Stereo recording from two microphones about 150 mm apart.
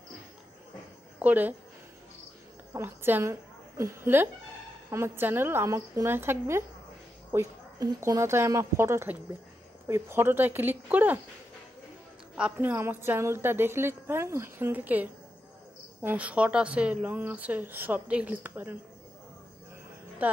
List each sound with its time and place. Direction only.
1.2 s speech: 10° right (ahead or behind)
2.7 s a woman's voice: 15° right (ahead or behind)
12.4 s speech: 10° right (ahead or behind)